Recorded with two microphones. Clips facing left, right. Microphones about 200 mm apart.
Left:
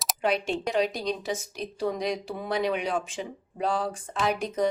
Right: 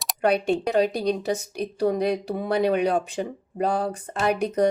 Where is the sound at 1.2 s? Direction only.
65° right (ahead or behind).